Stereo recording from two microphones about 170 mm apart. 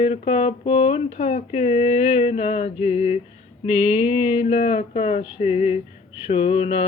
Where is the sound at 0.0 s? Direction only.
35° left (ahead or behind).